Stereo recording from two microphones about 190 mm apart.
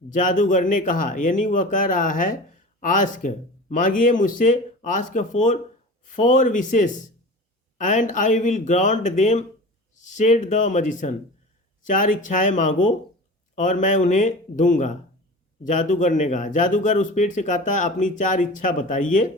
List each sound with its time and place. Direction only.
0.1 s speech: 40° left (ahead or behind)